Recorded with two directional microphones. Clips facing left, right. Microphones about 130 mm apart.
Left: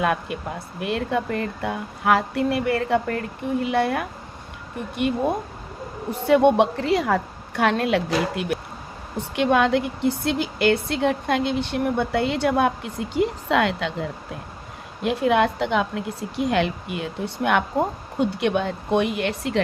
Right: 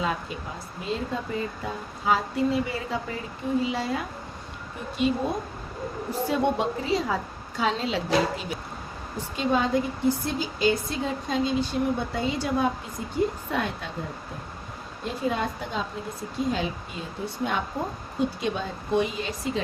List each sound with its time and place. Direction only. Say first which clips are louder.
0.0 s speech: left 6 dB; 65° left (ahead or behind)
6.1 s speech: left 8 dB; 65° left (ahead or behind); by 13.9 s 90° left
15.0 s speech: left 8 dB; 75° left (ahead or behind)